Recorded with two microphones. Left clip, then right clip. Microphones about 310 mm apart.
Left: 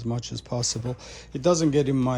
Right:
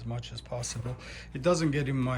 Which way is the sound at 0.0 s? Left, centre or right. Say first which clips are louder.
Left 8 dB; centre.